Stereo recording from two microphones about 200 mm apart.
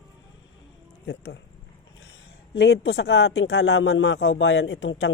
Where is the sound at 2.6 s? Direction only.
55° left (ahead or behind).